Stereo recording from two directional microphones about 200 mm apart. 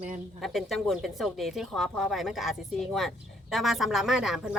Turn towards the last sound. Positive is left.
turn(degrees=0)  # may be behind; listen again after turning